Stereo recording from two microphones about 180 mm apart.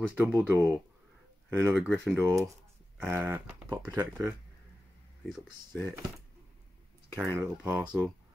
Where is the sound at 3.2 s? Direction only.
15° right (ahead or behind).